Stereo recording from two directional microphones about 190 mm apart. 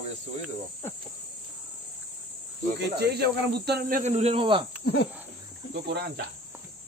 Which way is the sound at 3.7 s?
50° right (ahead or behind).